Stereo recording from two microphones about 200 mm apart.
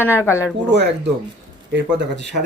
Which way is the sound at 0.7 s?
60° right (ahead or behind).